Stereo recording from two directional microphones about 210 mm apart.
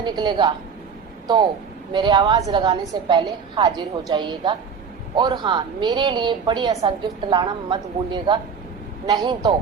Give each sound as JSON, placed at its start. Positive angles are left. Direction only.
{"t": 0.0, "sound": "a woman's voice", "side_deg": -20}
{"t": 1.9, "sound": "a woman's voice", "side_deg": -20}